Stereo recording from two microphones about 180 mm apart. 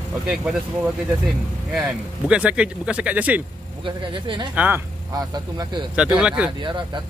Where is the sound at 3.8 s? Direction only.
25° right (ahead or behind).